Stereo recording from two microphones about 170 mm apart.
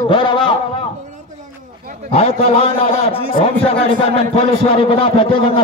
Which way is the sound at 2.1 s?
35° left (ahead or behind).